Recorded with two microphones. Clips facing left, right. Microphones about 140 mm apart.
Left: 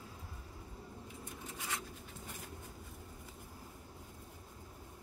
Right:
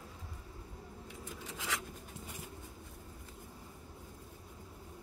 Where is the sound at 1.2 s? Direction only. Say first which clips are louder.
Right 4 dB; 90° right.